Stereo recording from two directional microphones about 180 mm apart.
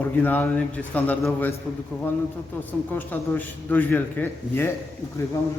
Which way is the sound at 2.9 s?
10° left (ahead or behind).